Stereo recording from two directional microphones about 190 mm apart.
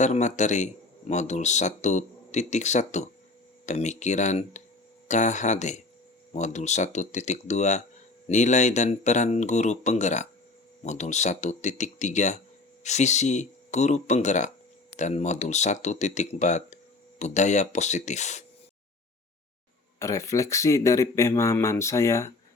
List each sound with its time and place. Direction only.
0.0 s speech: 40° left (ahead or behind)
20.0 s speech: 15° left (ahead or behind)